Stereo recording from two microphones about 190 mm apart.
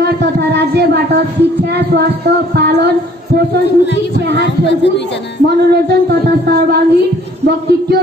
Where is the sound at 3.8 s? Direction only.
65° left (ahead or behind).